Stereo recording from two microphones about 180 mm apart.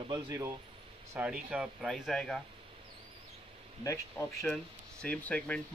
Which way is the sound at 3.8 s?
15° left (ahead or behind).